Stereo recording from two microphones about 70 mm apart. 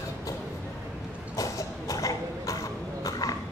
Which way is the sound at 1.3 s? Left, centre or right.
Left.